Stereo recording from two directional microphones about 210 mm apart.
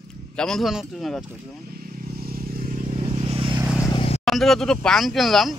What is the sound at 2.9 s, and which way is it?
Vehicle, 25° right (ahead or behind).